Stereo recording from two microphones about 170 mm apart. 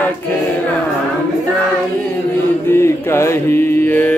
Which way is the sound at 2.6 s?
15° left (ahead or behind).